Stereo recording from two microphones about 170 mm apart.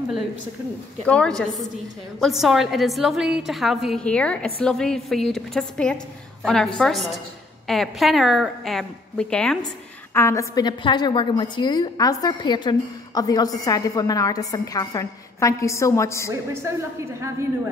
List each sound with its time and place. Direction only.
1.0 s a woman's voice: 5° left (ahead or behind)
10.1 s a woman's voice: 15° left (ahead or behind)